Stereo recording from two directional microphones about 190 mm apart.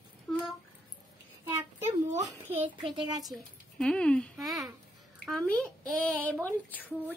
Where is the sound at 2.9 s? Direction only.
20° right (ahead or behind).